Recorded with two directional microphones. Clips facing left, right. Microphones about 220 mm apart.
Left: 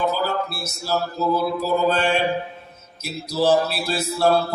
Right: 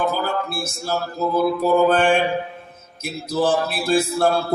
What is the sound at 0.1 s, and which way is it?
Speech, 50° right (ahead or behind).